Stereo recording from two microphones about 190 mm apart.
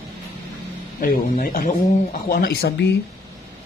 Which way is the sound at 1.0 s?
50° left (ahead or behind).